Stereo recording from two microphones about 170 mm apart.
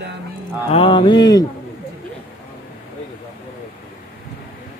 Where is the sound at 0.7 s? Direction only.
30° left (ahead or behind).